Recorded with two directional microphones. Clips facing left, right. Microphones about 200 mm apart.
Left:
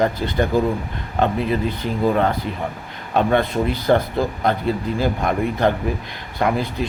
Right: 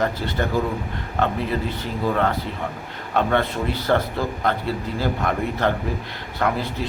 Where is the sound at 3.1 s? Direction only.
15° left (ahead or behind).